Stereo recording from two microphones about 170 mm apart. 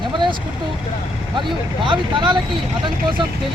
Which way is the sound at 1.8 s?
30° right (ahead or behind).